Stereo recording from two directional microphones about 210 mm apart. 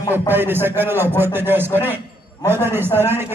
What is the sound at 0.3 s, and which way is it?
A man's voice, 10° right (ahead or behind).